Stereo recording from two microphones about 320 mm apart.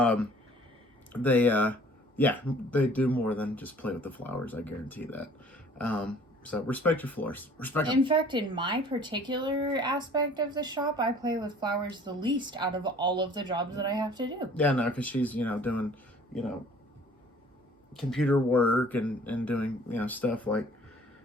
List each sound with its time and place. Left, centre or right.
0.0 s speech: centre
7.9 s speech: centre
14.5 s speech: centre
17.9 s speech: centre